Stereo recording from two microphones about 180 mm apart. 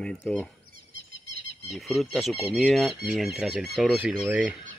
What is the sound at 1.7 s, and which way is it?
Speech, centre (ahead or behind).